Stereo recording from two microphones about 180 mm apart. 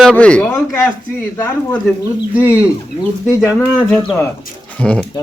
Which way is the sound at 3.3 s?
15° left (ahead or behind).